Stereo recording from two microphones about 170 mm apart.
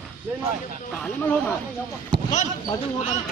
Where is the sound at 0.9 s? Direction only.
10° left (ahead or behind).